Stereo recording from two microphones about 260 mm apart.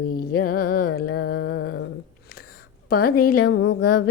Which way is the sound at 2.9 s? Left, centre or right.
Left.